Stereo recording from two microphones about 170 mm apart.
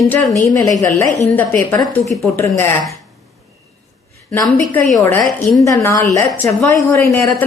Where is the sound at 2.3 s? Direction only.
15° left (ahead or behind).